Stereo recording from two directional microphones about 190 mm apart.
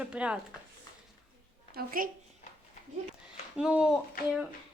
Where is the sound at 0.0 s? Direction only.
5° right (ahead or behind).